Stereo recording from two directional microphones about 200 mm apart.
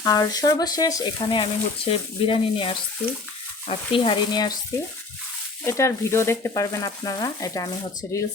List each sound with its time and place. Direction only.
0.0 s speech: 20° left (ahead or behind)
5.6 s frying: 15° left (ahead or behind)